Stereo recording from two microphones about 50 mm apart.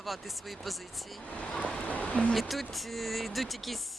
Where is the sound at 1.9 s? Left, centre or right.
Left.